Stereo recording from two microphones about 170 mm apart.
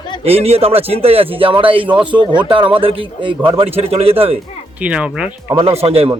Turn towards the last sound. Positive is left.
turn(degrees=-35)  # may be behind; listen again after turning